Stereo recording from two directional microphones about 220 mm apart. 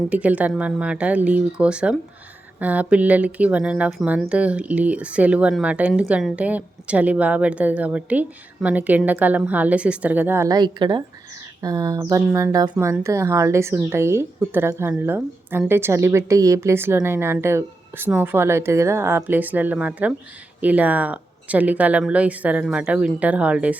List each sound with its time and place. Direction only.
0.1 s speech: 5° right (ahead or behind)